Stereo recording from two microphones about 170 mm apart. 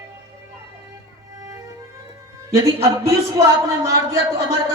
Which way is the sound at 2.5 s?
15° right (ahead or behind).